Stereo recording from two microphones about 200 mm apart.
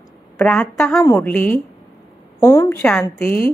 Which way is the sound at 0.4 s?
5° left (ahead or behind).